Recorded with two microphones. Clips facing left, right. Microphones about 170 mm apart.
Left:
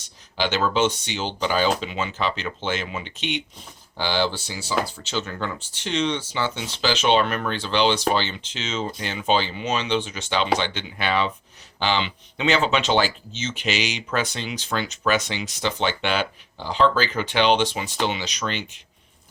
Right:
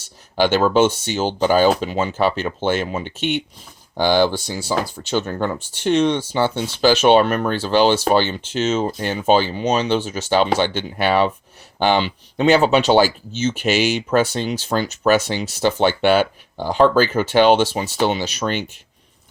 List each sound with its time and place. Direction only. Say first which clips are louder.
0.3 s speech: right 7 dB; 50° right (ahead or behind)
5.8 s speech: right 8 dB; 55° right (ahead or behind)